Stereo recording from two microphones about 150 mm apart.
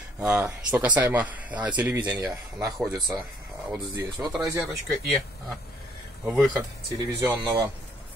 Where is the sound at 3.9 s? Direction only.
25° right (ahead or behind).